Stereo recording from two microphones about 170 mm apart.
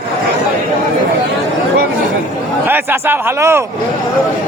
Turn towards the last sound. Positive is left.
turn(degrees=-15)  # may be behind; listen again after turning